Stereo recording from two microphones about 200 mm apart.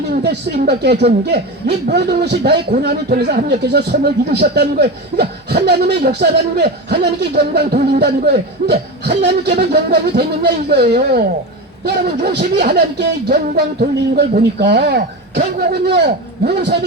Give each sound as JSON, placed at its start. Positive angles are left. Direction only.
{"t": 0.1, "sound": "a man's voice", "side_deg": -55}